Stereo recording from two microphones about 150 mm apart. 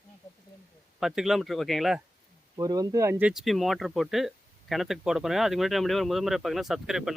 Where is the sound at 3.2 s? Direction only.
Centre (ahead or behind).